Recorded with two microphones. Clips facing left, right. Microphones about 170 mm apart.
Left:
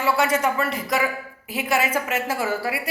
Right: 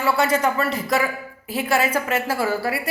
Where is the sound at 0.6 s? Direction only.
15° left (ahead or behind).